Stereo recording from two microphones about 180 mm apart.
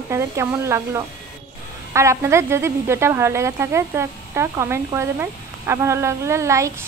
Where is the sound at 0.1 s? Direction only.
15° right (ahead or behind).